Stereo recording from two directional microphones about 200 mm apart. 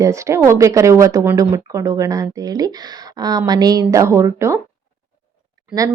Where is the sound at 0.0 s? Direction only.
15° right (ahead or behind).